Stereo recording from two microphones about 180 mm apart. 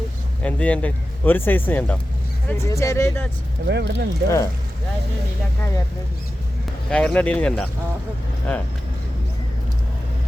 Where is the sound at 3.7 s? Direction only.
70° right (ahead or behind).